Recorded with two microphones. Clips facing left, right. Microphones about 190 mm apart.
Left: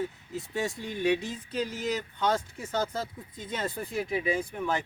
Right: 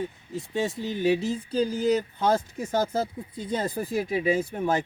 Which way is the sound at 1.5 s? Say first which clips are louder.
Right 7 dB; 35° right (ahead or behind).